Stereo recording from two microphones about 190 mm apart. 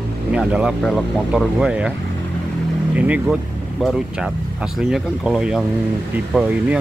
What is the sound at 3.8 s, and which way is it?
Speech, 5° right (ahead or behind).